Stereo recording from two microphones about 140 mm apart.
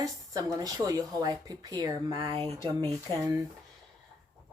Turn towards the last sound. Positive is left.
turn(degrees=-30)  # may be behind; listen again after turning